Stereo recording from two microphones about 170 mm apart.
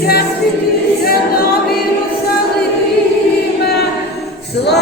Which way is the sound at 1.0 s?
65° left (ahead or behind).